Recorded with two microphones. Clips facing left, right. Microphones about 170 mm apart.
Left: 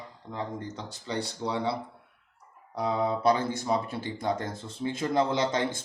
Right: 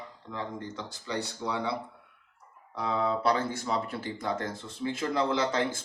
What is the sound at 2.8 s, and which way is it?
Speech, 25° left (ahead or behind).